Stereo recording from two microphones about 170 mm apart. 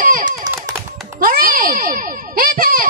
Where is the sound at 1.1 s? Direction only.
60° right (ahead or behind).